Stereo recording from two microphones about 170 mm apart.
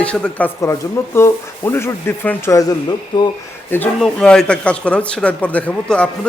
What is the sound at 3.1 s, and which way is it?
Speech, 25° left (ahead or behind).